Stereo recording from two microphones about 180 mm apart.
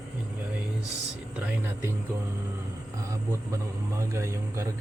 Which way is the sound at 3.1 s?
15° right (ahead or behind).